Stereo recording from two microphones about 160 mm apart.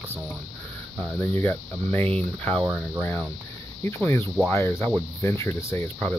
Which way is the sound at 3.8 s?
15° left (ahead or behind).